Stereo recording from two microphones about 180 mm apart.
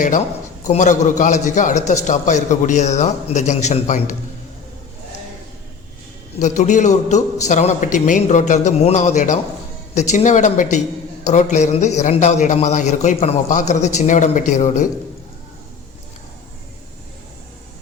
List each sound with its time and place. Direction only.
0.7 s a man's voice: 45° left (ahead or behind)
6.4 s a man's voice: 40° left (ahead or behind)